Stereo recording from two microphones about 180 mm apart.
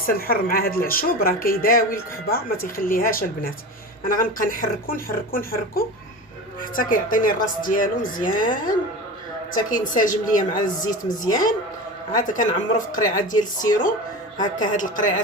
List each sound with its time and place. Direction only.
0.1 s speech: 55° left (ahead or behind)
10.9 s speech: 20° left (ahead or behind)
12.1 s speech: 45° left (ahead or behind)